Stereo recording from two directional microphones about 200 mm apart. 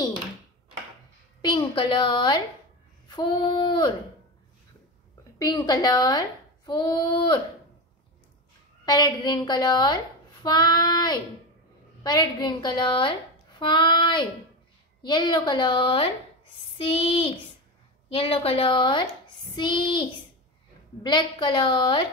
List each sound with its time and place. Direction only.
1.4 s a woman's voice: 25° left (ahead or behind)
5.4 s a woman's voice: 20° left (ahead or behind)
8.8 s a woman's voice: 20° left (ahead or behind)